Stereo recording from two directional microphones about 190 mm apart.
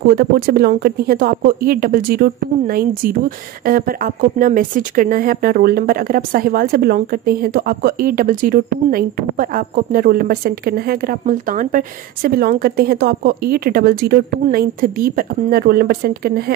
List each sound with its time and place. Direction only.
0.0 s speech: 55° right (ahead or behind)